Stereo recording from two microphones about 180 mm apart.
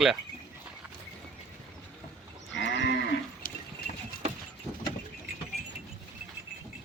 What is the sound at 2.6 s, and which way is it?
Livestock, 85° left.